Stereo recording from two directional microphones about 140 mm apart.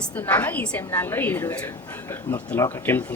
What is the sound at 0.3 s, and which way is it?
A woman's voice, 15° left (ahead or behind).